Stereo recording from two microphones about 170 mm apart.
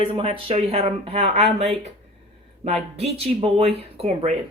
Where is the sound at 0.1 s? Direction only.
35° right (ahead or behind).